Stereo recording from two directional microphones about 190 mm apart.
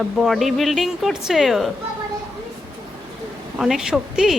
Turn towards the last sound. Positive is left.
turn(degrees=-5)  # may be behind; listen again after turning